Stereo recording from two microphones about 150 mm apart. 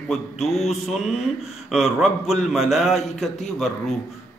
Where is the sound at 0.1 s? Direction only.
Centre (ahead or behind).